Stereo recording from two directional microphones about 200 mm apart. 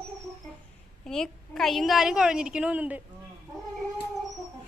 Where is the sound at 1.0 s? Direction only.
5° left (ahead or behind).